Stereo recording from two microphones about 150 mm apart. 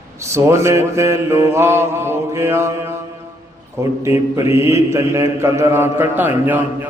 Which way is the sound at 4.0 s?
20° right (ahead or behind).